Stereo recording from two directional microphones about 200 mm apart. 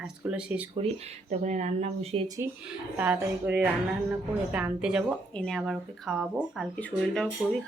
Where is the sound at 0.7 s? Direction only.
30° right (ahead or behind).